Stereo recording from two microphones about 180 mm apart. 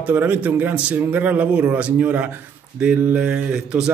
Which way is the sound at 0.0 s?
10° right (ahead or behind).